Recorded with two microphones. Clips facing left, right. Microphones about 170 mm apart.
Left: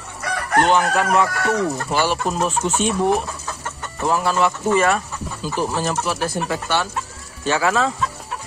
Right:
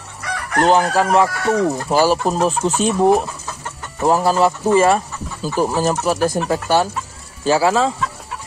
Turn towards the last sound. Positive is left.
turn(degrees=-30)  # may be behind; listen again after turning